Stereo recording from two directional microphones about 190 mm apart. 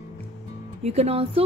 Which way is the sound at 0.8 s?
35° right (ahead or behind).